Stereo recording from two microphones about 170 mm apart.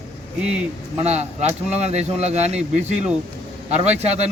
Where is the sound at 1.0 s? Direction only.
40° right (ahead or behind).